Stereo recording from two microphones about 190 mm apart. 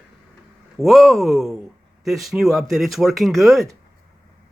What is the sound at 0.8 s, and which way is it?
Speech, centre (ahead or behind).